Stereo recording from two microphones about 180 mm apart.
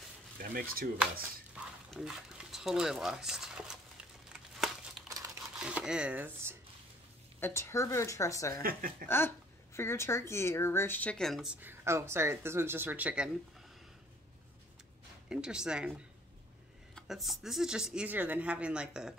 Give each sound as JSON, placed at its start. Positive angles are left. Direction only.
{"t": 0.4, "sound": "speech", "side_deg": -55}
{"t": 1.5, "sound": "dog", "side_deg": -5}
{"t": 4.3, "sound": "crumpling", "side_deg": 0}
{"t": 5.0, "sound": "crumpling", "side_deg": -15}
{"t": 5.6, "sound": "speech", "side_deg": -5}
{"t": 7.3, "sound": "speech", "side_deg": 15}
{"t": 11.6, "sound": "speech", "side_deg": -15}
{"t": 15.2, "sound": "speech", "side_deg": -5}